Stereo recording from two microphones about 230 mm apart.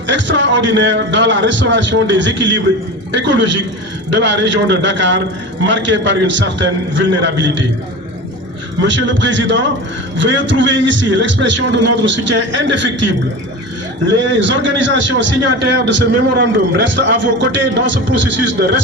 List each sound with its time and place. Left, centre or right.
0.1 s a man's voice: right
8.8 s a man's voice: right
14.3 s a man's voice: right